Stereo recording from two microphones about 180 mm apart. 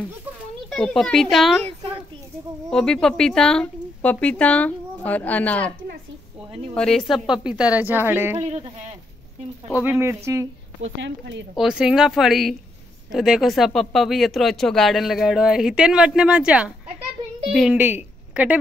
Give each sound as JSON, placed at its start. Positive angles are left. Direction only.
{"t": 0.7, "sound": "speech", "side_deg": 5}
{"t": 2.7, "sound": "a woman's voice", "side_deg": 5}
{"t": 6.7, "sound": "a woman's voice", "side_deg": 5}
{"t": 8.4, "sound": "a sound", "side_deg": -35}
{"t": 9.8, "sound": "a woman's voice", "side_deg": -15}
{"t": 10.8, "sound": "speech", "side_deg": -85}
{"t": 11.5, "sound": "a woman's voice", "side_deg": -5}